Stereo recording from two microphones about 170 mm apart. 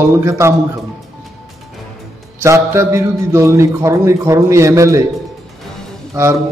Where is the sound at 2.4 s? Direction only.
15° right (ahead or behind).